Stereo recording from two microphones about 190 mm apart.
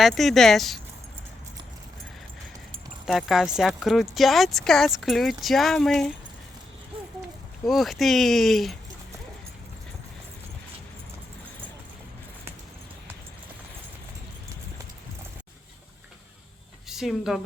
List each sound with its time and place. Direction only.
0.0 s speech: centre (ahead or behind)
3.1 s speech: centre (ahead or behind)
6.9 s a sound: 25° right (ahead or behind)
7.6 s speech: centre (ahead or behind)
16.9 s speech: centre (ahead or behind)